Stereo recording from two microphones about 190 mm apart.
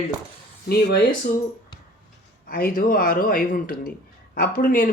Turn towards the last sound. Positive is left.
turn(degrees=45)  # may be behind; listen again after turning